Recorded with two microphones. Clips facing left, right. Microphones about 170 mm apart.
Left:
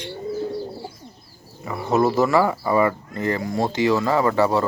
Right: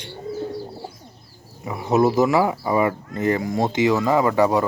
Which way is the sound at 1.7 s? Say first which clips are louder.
Right 1 dB; 15° right (ahead or behind).